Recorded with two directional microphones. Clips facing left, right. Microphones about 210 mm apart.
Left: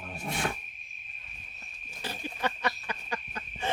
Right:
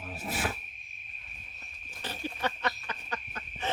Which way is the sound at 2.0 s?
10° left (ahead or behind).